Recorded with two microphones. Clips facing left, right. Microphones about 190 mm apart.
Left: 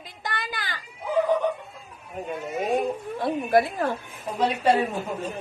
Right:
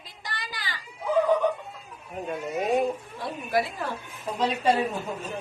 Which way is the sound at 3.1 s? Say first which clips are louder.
Left 9 dB; 55° left (ahead or behind).